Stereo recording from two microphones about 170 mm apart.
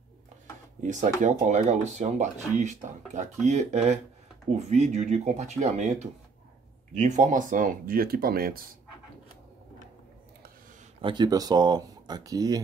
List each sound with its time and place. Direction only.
1.2 s speech: 45° right (ahead or behind); by 8.5 s 60° right (ahead or behind)
11.0 s speech: 30° right (ahead or behind)